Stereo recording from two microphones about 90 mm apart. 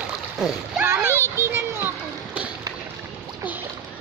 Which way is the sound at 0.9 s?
30° right (ahead or behind).